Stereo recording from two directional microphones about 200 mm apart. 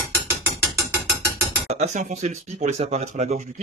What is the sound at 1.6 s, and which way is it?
Speech, 35° right (ahead or behind).